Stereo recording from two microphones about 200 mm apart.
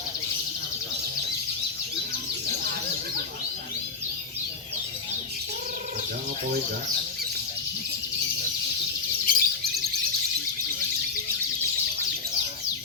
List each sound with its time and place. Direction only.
9.3 s bird: 45° left (ahead or behind)